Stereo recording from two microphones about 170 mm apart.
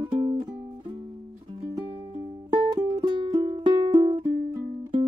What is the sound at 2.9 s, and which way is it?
Music, 25° right (ahead or behind).